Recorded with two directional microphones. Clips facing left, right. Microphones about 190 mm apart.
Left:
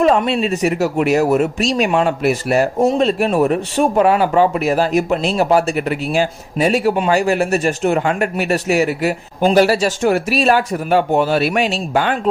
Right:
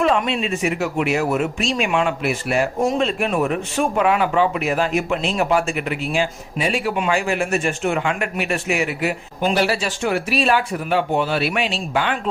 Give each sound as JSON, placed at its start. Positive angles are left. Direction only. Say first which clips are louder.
{"t": 0.0, "sound": "speech", "louder": "left 5 dB", "side_deg": 40}